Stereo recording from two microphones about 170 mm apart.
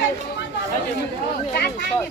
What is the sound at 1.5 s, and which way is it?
Speech, 65° left (ahead or behind).